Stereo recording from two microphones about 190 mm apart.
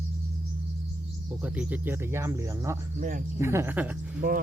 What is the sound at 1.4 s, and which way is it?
Speech, 5° right (ahead or behind).